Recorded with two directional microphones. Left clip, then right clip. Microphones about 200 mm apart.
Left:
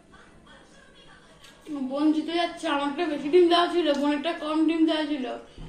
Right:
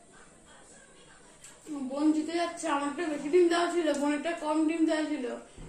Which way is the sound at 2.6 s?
5° left (ahead or behind).